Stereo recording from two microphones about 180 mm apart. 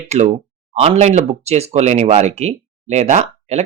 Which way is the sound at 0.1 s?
40° right (ahead or behind).